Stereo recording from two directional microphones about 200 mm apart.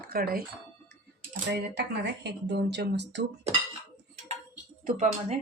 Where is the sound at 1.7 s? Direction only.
55° right (ahead or behind).